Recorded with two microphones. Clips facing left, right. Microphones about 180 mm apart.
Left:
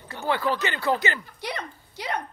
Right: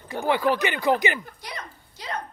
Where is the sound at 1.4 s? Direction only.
65° left (ahead or behind).